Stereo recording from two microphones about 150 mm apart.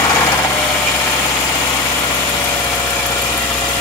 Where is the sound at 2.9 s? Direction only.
15° left (ahead or behind).